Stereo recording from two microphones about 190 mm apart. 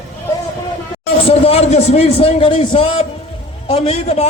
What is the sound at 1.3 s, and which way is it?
A man's voice, 30° left (ahead or behind).